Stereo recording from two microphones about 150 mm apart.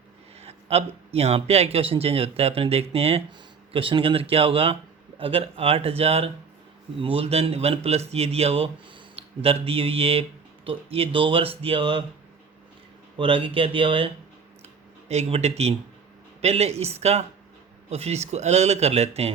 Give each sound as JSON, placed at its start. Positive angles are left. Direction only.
{"t": 0.3, "sound": "speech", "side_deg": -45}
{"t": 13.1, "sound": "speech", "side_deg": -35}
{"t": 15.1, "sound": "speech", "side_deg": -45}